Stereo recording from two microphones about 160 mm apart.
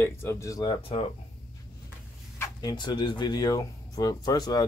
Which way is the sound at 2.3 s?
15° left (ahead or behind).